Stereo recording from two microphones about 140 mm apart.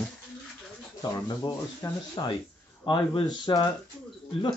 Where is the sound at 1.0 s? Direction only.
30° left (ahead or behind).